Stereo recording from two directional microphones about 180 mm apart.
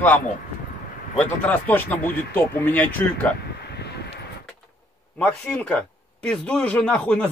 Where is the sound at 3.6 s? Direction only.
65° left (ahead or behind).